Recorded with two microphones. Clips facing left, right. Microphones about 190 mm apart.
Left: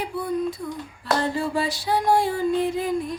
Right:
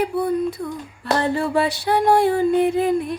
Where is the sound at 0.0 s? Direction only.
60° right (ahead or behind).